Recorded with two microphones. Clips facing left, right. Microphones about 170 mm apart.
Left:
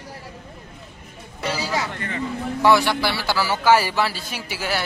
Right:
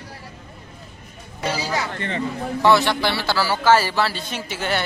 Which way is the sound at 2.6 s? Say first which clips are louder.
Even; 10° left (ahead or behind).